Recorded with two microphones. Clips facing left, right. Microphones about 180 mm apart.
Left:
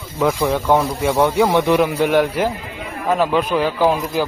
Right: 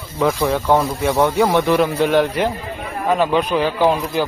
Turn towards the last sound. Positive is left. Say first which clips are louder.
# even
turn(degrees=0)  # may be behind; listen again after turning